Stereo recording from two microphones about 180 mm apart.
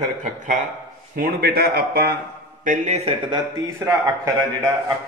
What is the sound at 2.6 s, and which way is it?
Speech, 45° right (ahead or behind).